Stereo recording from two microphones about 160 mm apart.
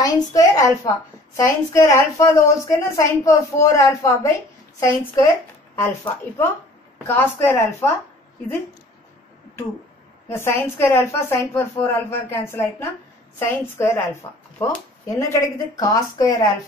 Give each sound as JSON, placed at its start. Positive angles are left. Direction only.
{"t": 0.0, "sound": "a woman's voice", "side_deg": 20}
{"t": 7.1, "sound": "a woman's voice", "side_deg": 15}
{"t": 10.2, "sound": "a woman's voice", "side_deg": 15}